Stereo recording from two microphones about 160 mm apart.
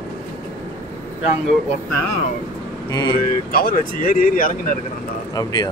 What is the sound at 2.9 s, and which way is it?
Speech, 25° left (ahead or behind).